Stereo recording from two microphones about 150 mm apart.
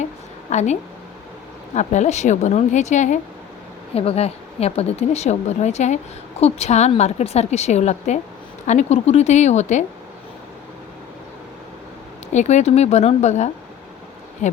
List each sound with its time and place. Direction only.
0.5 s speech: 50° left (ahead or behind)
3.9 s speech: 40° left (ahead or behind)
12.3 s speech: 50° left (ahead or behind)
14.4 s bee: 55° left (ahead or behind)